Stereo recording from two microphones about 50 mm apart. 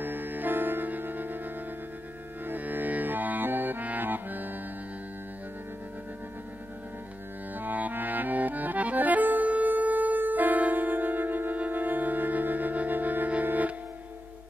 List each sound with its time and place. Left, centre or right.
0.0 s music: right
2.4 s music: right
7.5 s accordion: right